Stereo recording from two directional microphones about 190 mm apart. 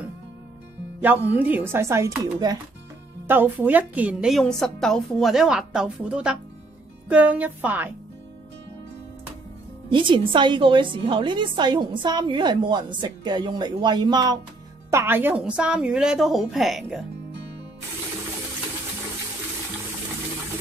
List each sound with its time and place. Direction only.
1.0 s a woman's voice: 10° right (ahead or behind)
9.8 s a woman's voice: 25° right (ahead or behind); by 17.0 s centre (ahead or behind)